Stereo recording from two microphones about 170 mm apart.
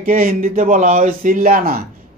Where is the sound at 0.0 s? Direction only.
55° right (ahead or behind).